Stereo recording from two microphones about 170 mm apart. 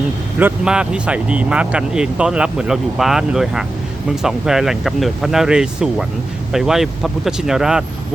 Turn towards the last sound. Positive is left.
turn(degrees=-5)  # may be behind; listen again after turning